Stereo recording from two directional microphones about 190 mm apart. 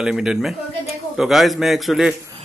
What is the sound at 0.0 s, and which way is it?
A man's voice, 5° right (ahead or behind).